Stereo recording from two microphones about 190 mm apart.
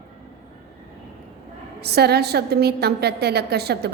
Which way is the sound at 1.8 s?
60° right (ahead or behind).